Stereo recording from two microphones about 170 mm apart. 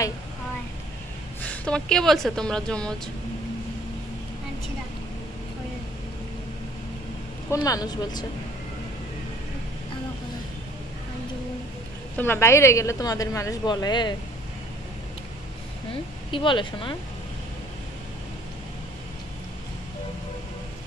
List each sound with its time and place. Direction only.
1.4 s speech: 5° left (ahead or behind)
7.6 s a woman's voice: 20° left (ahead or behind)
12.2 s a woman's voice: 15° left (ahead or behind)
16.3 s a woman's voice: 30° left (ahead or behind)